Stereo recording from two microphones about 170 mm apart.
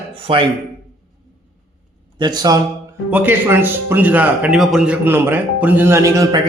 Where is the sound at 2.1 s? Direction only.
25° right (ahead or behind).